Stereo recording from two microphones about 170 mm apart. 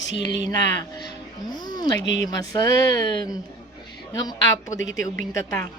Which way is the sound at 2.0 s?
90° left.